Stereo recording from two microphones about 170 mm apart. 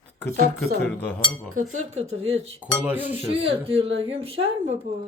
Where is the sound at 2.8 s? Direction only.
10° right (ahead or behind).